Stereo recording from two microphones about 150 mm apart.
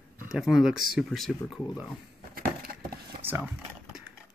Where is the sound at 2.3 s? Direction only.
80° right.